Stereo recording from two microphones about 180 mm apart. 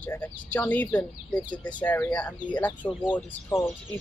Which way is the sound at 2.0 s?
5° left (ahead or behind).